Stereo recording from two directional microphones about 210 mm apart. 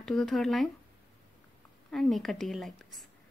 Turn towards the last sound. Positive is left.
turn(degrees=0)  # may be behind; listen again after turning